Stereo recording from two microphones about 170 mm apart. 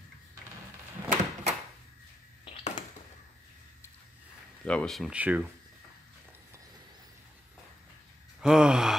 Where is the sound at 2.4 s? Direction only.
30° left (ahead or behind).